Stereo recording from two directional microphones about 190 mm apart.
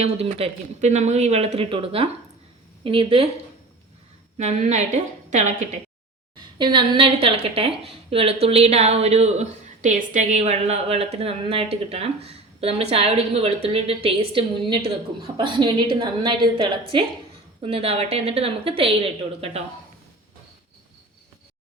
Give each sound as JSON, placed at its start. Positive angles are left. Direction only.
{"t": 0.0, "sound": "a woman's voice", "side_deg": -35}
{"t": 4.4, "sound": "speech", "side_deg": -35}
{"t": 6.3, "sound": "a woman's voice", "side_deg": -25}